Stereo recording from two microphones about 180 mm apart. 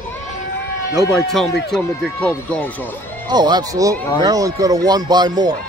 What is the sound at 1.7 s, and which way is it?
Speech, 5° left (ahead or behind).